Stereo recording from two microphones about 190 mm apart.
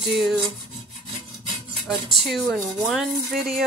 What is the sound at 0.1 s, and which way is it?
Speech, centre (ahead or behind).